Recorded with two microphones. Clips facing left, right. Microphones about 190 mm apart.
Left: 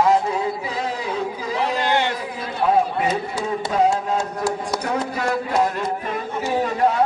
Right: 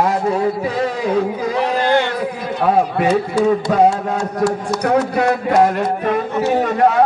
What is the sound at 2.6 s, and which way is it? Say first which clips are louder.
Music: right 3 dB; 70° right (ahead or behind).